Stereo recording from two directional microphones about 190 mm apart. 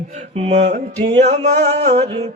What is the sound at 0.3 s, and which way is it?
Mantra, 35° right (ahead or behind).